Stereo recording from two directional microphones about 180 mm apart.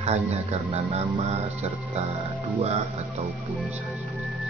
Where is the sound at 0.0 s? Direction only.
35° right (ahead or behind).